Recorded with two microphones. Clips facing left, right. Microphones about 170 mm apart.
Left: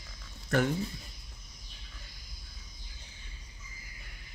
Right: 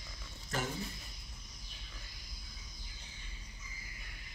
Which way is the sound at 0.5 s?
65° left (ahead or behind).